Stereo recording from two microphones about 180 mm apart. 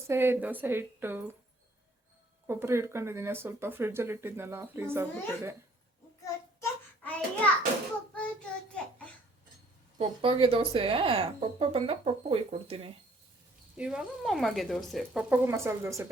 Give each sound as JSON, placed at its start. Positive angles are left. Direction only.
{"t": 0.1, "sound": "speech", "side_deg": -10}
{"t": 2.5, "sound": "speech", "side_deg": -15}
{"t": 6.6, "sound": "child singing", "side_deg": 10}
{"t": 10.0, "sound": "speech", "side_deg": -30}
{"t": 13.7, "sound": "speech", "side_deg": -5}